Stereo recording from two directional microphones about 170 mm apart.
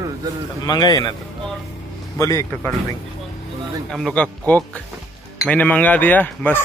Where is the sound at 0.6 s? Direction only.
20° left (ahead or behind).